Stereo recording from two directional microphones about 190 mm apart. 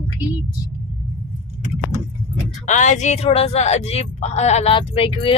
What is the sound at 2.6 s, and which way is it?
Speech, 40° left (ahead or behind).